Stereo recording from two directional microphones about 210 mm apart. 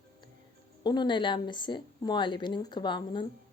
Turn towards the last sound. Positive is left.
turn(degrees=20)  # may be behind; listen again after turning